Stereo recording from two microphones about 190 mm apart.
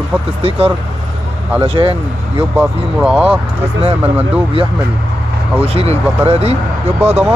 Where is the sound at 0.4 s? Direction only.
30° right (ahead or behind).